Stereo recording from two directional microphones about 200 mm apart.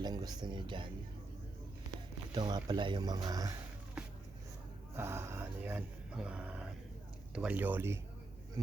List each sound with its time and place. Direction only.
0.0 s speech: 20° right (ahead or behind)
2.3 s speech: 20° right (ahead or behind)
4.9 s speech: 10° right (ahead or behind)